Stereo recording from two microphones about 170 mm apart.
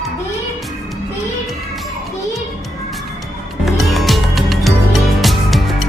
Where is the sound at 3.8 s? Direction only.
Centre (ahead or behind).